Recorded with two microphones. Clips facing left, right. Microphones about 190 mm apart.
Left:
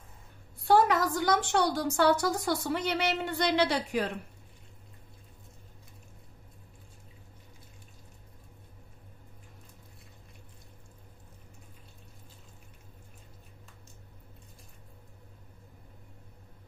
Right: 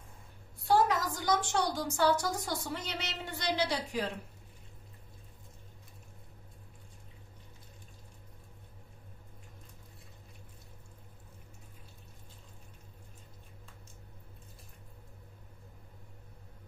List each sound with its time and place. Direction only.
0.7 s a woman's voice: 65° left (ahead or behind)